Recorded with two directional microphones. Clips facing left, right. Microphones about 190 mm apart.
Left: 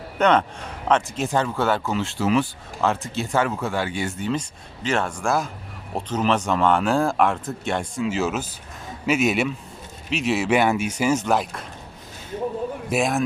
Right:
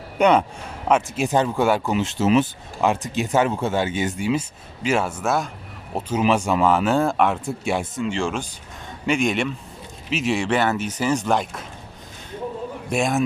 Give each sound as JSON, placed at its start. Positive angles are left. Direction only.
{"t": 0.2, "sound": "speech", "side_deg": -10}
{"t": 4.2, "sound": "speech", "side_deg": -10}
{"t": 12.9, "sound": "speech", "side_deg": 0}